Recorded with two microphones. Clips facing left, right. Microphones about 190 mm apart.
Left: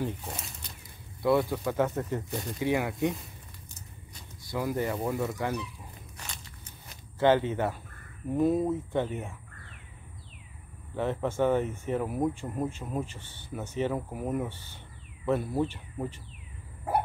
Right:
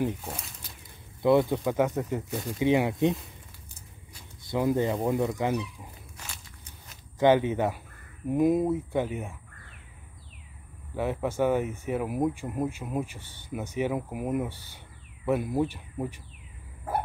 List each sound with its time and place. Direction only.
0.0 s speech: 5° right (ahead or behind)
1.2 s speech: 20° right (ahead or behind)
4.5 s speech: 20° right (ahead or behind)
6.1 s walk: 10° right (ahead or behind)
7.2 s speech: 15° right (ahead or behind)
11.0 s speech: 10° right (ahead or behind)